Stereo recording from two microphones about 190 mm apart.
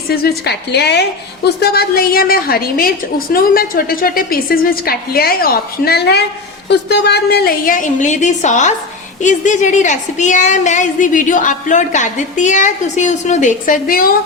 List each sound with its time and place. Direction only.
0.1 s a woman's voice: 55° left (ahead or behind)